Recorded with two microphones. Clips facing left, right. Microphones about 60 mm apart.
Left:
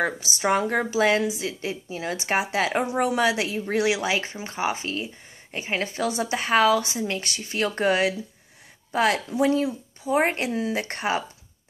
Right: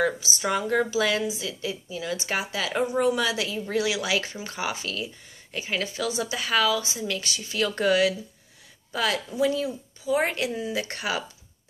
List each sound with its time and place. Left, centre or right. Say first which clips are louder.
0.2 s speech: left 4 dB; left
4.1 s speech: left 1 dB; left
7.0 s speech: left 2 dB; left
10.5 s speech: left 3 dB; left